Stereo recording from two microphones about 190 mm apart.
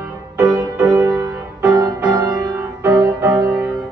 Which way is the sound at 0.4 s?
20° right (ahead or behind).